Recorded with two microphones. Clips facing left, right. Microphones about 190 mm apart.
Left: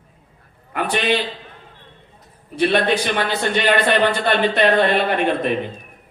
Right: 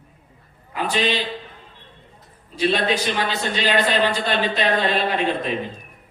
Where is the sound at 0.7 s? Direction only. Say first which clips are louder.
Left 2 dB; 60° left (ahead or behind).